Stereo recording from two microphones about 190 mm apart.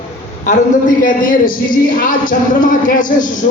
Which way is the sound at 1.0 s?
45° left (ahead or behind).